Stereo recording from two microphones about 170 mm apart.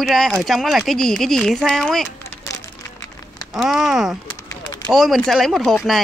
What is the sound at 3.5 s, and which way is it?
Speech, centre (ahead or behind).